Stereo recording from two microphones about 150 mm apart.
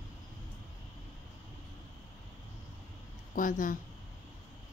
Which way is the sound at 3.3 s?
65° left (ahead or behind).